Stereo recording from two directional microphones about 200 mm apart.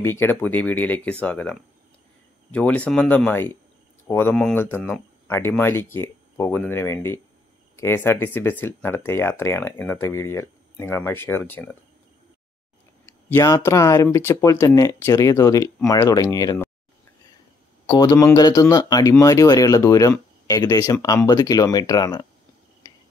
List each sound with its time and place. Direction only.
0.0 s speech: 10° left (ahead or behind)
13.3 s speech: 15° left (ahead or behind)
17.8 s speech: 20° left (ahead or behind)